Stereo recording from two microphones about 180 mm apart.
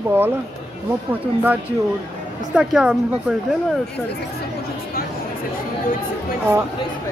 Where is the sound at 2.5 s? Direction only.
5° right (ahead or behind).